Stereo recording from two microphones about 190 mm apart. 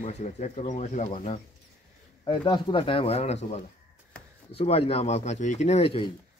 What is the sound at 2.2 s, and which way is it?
Speech, 25° left (ahead or behind).